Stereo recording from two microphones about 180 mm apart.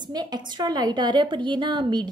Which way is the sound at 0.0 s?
25° right (ahead or behind).